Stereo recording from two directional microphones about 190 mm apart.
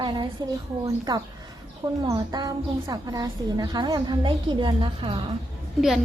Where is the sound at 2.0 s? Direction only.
20° right (ahead or behind).